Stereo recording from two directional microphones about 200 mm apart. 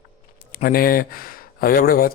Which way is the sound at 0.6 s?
45° left (ahead or behind).